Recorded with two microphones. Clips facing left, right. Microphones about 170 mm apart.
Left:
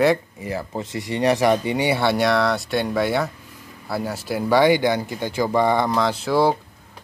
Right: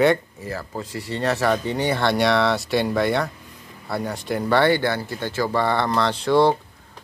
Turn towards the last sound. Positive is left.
turn(degrees=5)  # may be behind; listen again after turning